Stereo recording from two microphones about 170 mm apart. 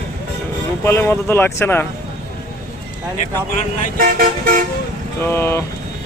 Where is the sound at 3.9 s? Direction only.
60° right (ahead or behind).